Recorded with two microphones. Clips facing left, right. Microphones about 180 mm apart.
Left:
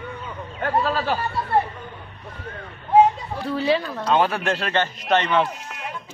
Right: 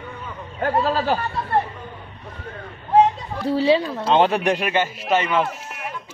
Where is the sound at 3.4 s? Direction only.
30° right (ahead or behind); by 5.5 s 5° right (ahead or behind).